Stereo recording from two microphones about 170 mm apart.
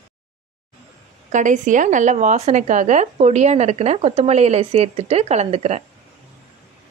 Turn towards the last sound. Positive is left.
turn(degrees=-40)  # may be behind; listen again after turning